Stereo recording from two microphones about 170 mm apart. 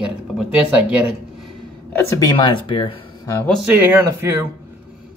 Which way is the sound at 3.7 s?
15° right (ahead or behind).